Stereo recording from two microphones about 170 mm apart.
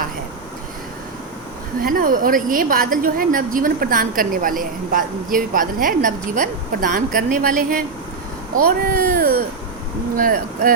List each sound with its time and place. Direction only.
1.8 s a woman's voice: 60° right (ahead or behind)